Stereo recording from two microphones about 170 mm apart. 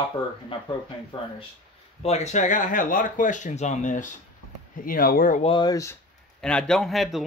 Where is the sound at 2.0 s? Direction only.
40° left (ahead or behind).